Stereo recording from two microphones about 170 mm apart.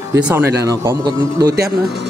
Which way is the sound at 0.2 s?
15° right (ahead or behind).